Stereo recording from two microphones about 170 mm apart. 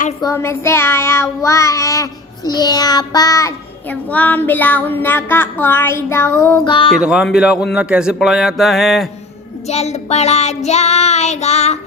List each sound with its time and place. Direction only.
0.2 s child singing: 15° left (ahead or behind)
6.7 s child singing: 30° left (ahead or behind)
7.0 s speech: 5° right (ahead or behind)
9.6 s child singing: 40° left (ahead or behind)